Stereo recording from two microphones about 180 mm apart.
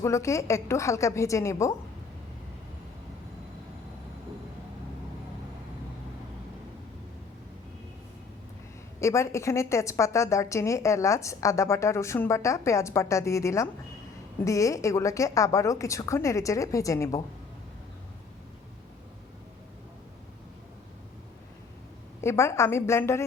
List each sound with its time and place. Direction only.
0.0 s a woman's voice: 15° left (ahead or behind)
9.0 s a woman's voice: 15° left (ahead or behind)
22.2 s a woman's voice: 15° left (ahead or behind)